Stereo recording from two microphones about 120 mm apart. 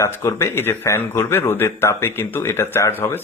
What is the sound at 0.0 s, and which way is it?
A man's voice, 25° left (ahead or behind).